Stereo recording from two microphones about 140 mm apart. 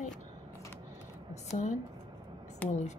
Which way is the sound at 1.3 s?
55° left (ahead or behind).